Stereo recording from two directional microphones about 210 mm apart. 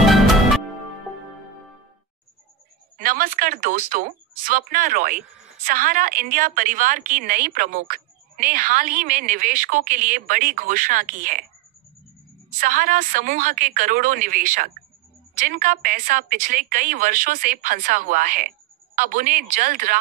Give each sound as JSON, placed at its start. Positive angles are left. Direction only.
{"t": 0.0, "sound": "music", "side_deg": 0}
{"t": 3.0, "sound": "a woman's voice", "side_deg": -40}
{"t": 12.5, "sound": "a woman's voice", "side_deg": -40}